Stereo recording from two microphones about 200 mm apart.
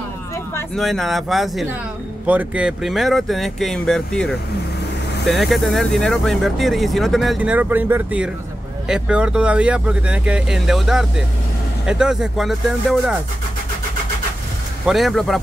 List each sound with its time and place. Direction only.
0.7 s speech: centre (ahead or behind)
14.9 s speech: centre (ahead or behind)